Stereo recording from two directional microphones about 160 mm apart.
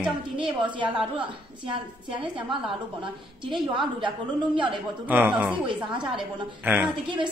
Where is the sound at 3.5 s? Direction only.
30° right (ahead or behind).